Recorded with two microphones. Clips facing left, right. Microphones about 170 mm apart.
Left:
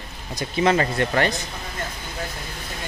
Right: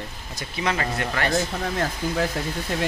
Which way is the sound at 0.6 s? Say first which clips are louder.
Left 6 dB; 30° left (ahead or behind).